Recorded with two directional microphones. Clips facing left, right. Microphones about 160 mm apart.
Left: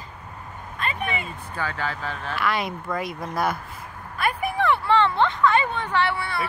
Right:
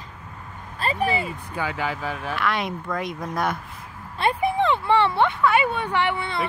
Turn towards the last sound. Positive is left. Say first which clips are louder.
# even
turn(degrees=-20)  # may be behind; listen again after turning